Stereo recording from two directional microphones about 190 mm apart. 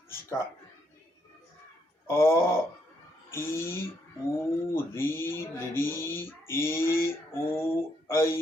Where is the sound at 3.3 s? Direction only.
15° left (ahead or behind).